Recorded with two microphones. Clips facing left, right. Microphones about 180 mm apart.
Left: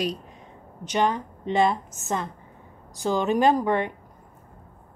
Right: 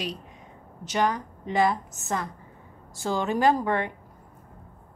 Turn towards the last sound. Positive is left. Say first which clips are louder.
# left 2 dB
turn(degrees=15)  # may be behind; listen again after turning